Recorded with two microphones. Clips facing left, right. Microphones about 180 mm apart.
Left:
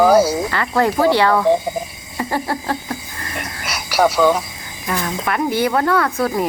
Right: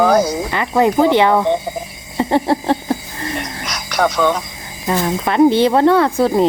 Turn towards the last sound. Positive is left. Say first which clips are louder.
# right 5 dB
turn(degrees=-25)  # may be behind; listen again after turning